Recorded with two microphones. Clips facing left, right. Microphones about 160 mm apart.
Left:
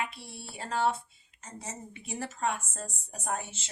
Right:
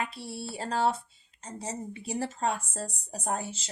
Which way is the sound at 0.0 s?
35° right (ahead or behind).